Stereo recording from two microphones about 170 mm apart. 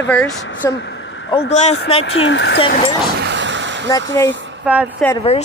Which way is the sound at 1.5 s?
45° left (ahead or behind).